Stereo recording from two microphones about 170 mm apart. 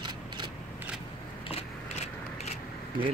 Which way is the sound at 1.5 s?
40° left (ahead or behind).